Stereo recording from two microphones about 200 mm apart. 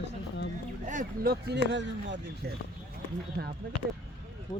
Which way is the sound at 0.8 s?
40° right (ahead or behind).